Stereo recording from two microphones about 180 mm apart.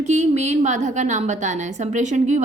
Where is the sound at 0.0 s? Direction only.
40° right (ahead or behind).